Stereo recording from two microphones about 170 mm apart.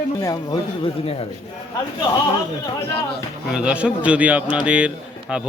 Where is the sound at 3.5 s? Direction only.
5° right (ahead or behind).